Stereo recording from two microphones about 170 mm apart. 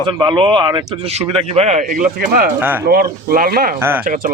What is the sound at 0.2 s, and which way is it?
A man's voice, 25° right (ahead or behind).